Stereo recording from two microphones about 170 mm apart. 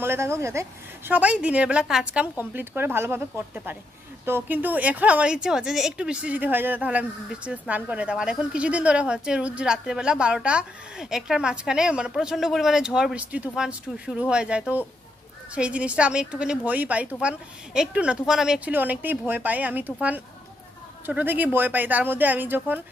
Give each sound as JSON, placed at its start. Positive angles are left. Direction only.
{"t": 0.0, "sound": "a woman's voice", "side_deg": -15}